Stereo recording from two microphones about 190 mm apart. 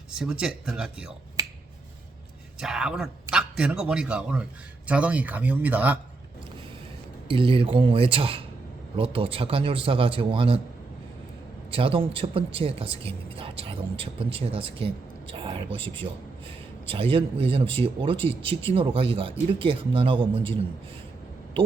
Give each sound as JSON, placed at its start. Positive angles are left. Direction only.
{"t": 0.1, "sound": "a man's voice", "side_deg": -5}
{"t": 2.6, "sound": "a man's voice", "side_deg": -5}
{"t": 7.3, "sound": "speech", "side_deg": -30}
{"t": 11.7, "sound": "speech", "side_deg": -30}